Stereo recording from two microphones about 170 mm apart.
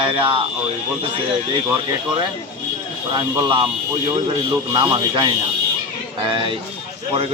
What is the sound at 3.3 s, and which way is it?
Speech, 30° right (ahead or behind).